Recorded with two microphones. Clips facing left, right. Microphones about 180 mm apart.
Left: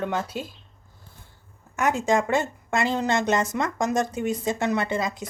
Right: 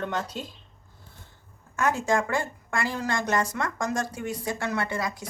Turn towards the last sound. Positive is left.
turn(degrees=20)  # may be behind; listen again after turning